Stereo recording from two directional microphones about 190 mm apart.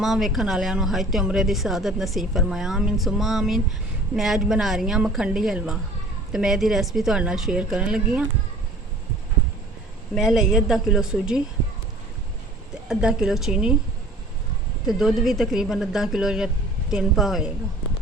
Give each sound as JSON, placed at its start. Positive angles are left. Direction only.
{"t": 0.0, "sound": "a woman's voice", "side_deg": 0}
{"t": 10.2, "sound": "a woman's voice", "side_deg": 0}
{"t": 12.9, "sound": "a woman's voice", "side_deg": -5}
{"t": 14.8, "sound": "a woman's voice", "side_deg": 0}